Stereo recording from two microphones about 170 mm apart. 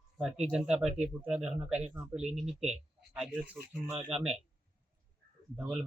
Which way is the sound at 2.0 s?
5° right (ahead or behind).